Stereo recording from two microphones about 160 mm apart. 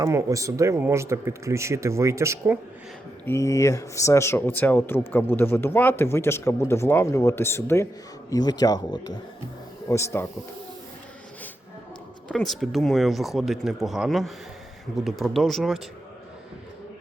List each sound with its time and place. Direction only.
0.0 s speech: 20° right (ahead or behind)
3.2 s speech: 20° left (ahead or behind)
12.3 s speech: centre (ahead or behind)